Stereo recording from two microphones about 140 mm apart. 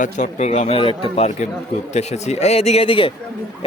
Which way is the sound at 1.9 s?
50° left (ahead or behind).